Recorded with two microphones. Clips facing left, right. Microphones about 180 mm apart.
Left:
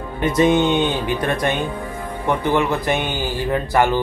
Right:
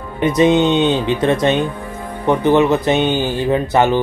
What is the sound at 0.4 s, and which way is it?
Speech, 20° right (ahead or behind).